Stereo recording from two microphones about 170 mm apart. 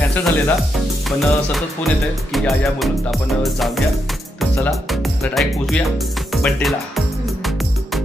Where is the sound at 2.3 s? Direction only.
Centre (ahead or behind).